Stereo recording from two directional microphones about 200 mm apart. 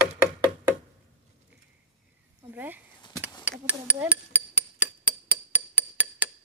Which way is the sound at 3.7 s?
10° right (ahead or behind).